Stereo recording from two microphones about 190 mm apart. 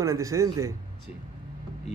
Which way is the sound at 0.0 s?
15° right (ahead or behind).